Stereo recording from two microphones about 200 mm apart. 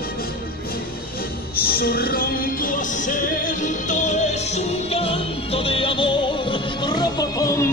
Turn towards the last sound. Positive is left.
turn(degrees=15)  # may be behind; listen again after turning